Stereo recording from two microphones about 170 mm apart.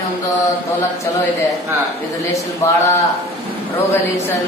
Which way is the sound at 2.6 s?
20° left (ahead or behind).